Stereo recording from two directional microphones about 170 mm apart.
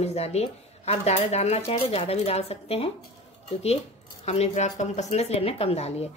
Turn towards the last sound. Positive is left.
turn(degrees=40)  # may be behind; listen again after turning